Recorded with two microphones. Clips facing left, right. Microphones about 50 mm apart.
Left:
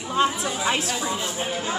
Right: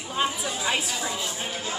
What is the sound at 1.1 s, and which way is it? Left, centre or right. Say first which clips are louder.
Speech: left 4 dB; left.